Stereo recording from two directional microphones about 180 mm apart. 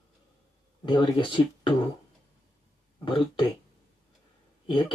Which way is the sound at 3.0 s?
25° left (ahead or behind).